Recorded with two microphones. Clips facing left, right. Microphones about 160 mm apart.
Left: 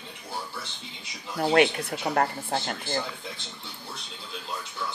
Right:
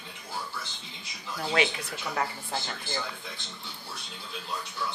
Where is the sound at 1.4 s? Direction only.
50° left (ahead or behind).